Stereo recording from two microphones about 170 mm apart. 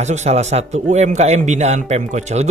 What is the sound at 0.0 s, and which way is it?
Speech, 40° right (ahead or behind).